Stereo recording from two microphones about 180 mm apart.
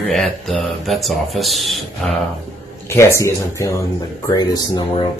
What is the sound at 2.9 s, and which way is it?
Speech, 15° left (ahead or behind).